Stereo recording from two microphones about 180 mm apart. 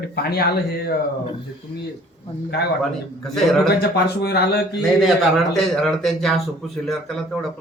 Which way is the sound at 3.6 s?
65° left (ahead or behind).